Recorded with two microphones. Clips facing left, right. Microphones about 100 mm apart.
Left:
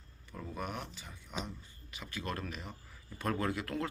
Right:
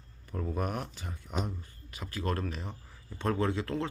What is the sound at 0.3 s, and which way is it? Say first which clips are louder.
Speech: right 7 dB; 40° right (ahead or behind).